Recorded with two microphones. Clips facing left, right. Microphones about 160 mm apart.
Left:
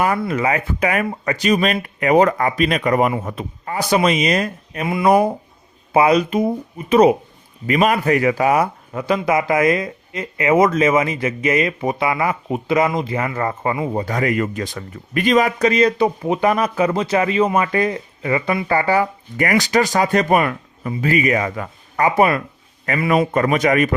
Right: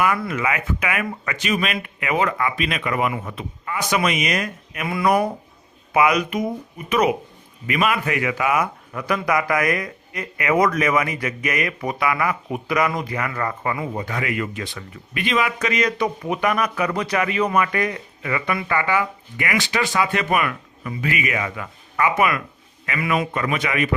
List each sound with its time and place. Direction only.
0.0 s speech: 30° left (ahead or behind)